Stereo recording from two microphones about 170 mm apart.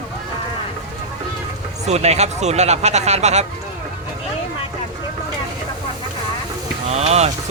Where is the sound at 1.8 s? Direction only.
40° right (ahead or behind).